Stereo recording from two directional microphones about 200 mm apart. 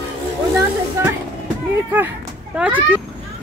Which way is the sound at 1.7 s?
10° right (ahead or behind).